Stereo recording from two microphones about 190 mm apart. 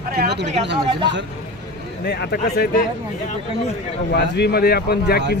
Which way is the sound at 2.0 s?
55° left (ahead or behind).